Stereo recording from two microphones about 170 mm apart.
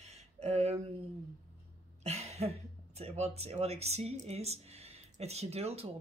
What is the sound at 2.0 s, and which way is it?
Speech, 40° right (ahead or behind).